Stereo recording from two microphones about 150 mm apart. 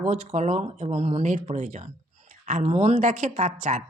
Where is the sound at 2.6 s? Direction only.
50° right (ahead or behind).